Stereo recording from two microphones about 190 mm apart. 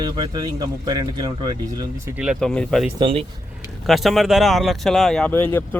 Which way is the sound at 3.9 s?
Centre (ahead or behind).